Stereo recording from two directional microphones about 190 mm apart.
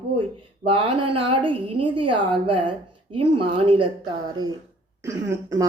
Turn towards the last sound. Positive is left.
turn(degrees=-15)  # may be behind; listen again after turning